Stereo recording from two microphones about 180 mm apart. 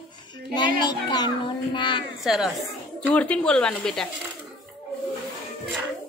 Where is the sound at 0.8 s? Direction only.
25° left (ahead or behind).